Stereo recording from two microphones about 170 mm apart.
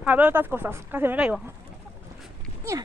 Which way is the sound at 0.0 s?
10° right (ahead or behind).